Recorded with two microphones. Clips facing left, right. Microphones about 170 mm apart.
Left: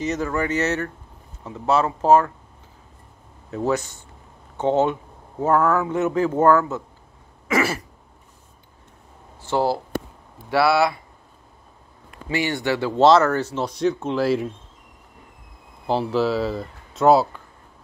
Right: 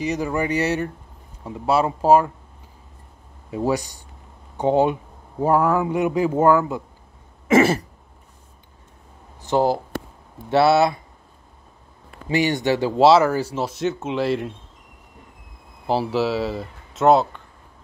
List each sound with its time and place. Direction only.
0.0 s speech: 10° right (ahead or behind)
2.0 s speech: 10° right (ahead or behind)
3.4 s speech: 10° right (ahead or behind)
7.4 s throat clearing: 25° right (ahead or behind)
9.4 s speech: 15° right (ahead or behind)
12.3 s speech: 20° right (ahead or behind); by 14.5 s centre (ahead or behind)
15.9 s speech: 5° right (ahead or behind)